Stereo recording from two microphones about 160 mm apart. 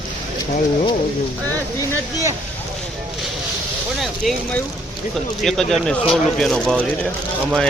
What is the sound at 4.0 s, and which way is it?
Speech, 5° left (ahead or behind).